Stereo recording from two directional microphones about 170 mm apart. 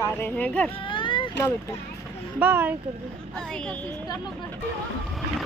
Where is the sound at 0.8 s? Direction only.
30° left (ahead or behind).